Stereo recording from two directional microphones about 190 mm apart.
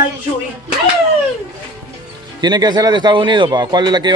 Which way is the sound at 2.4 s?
20° right (ahead or behind).